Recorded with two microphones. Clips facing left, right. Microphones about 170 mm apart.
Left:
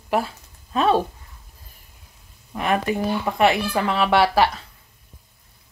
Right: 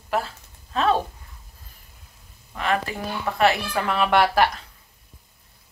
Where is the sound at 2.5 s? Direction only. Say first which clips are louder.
Left 3 dB; 15° left (ahead or behind).